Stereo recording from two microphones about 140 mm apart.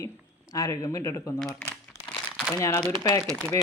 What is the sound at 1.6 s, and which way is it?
Crumpling, 10° left (ahead or behind).